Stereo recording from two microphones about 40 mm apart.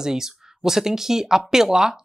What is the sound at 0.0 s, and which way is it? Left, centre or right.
A woman's voice, centre.